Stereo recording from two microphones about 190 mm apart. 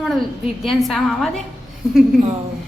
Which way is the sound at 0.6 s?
Centre (ahead or behind).